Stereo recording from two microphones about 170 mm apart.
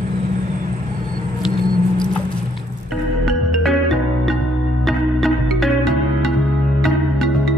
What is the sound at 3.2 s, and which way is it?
Music, centre (ahead or behind).